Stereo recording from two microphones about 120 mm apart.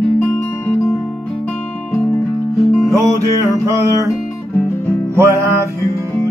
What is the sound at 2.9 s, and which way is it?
Music, 25° right (ahead or behind).